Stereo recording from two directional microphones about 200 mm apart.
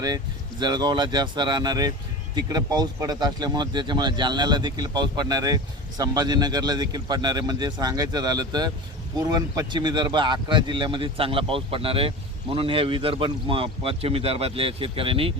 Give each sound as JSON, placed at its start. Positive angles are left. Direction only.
{"t": 0.6, "sound": "speech", "side_deg": -20}